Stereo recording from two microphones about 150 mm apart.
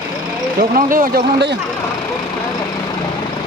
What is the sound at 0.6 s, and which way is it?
Speech, 70° right (ahead or behind).